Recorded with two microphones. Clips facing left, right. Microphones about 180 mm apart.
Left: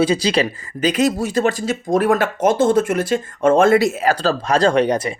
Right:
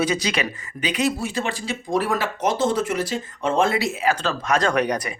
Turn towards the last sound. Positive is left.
turn(degrees=30)  # may be behind; listen again after turning